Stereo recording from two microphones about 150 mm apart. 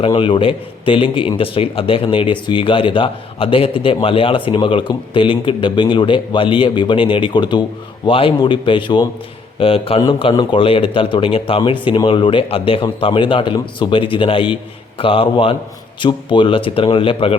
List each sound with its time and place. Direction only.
0.0 s speech: 35° left (ahead or behind)